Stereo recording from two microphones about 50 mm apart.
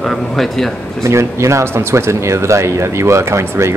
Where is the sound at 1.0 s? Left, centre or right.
Right.